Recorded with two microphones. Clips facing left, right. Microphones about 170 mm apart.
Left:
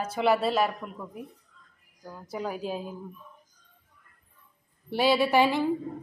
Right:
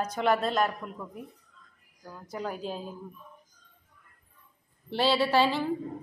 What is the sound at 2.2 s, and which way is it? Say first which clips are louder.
Speech: left 2 dB; 5° left (ahead or behind).